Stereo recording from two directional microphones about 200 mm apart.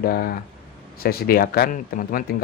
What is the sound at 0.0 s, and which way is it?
Speech, 50° left (ahead or behind).